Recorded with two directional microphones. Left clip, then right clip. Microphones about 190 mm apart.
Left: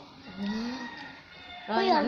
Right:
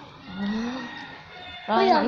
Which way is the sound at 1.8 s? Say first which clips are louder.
Right 5 dB; 15° left (ahead or behind).